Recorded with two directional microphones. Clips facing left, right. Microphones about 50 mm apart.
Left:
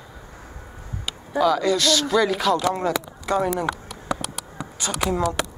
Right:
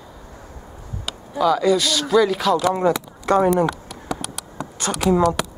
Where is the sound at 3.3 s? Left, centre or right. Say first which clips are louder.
Right 5 dB; right.